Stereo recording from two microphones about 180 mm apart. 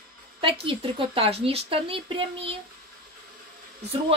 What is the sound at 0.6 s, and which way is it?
Speech, 30° right (ahead or behind).